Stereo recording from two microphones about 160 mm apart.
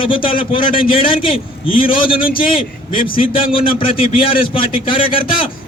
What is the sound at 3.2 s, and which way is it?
A man's voice, 35° left (ahead or behind).